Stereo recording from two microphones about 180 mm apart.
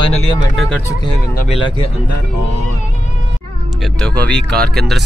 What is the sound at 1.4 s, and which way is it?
Speech, 30° left (ahead or behind).